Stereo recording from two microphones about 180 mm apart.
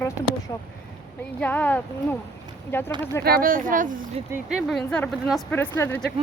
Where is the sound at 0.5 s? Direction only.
20° left (ahead or behind).